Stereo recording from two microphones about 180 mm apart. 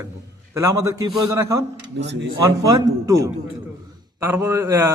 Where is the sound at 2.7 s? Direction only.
20° right (ahead or behind).